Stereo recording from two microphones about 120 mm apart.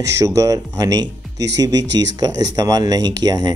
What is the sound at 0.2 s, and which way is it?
Speech, 30° right (ahead or behind).